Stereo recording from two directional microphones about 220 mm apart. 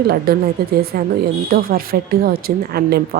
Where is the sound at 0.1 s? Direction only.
45° right (ahead or behind).